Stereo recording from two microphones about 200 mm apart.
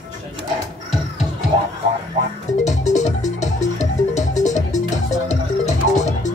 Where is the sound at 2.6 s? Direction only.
35° left (ahead or behind).